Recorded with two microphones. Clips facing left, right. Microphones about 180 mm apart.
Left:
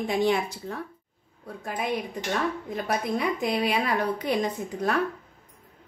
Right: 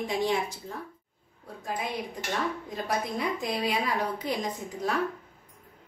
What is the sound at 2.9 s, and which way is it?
A woman's voice, 65° left (ahead or behind).